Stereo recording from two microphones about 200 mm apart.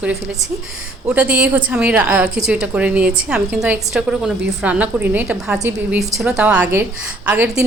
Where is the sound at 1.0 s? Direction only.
10° right (ahead or behind).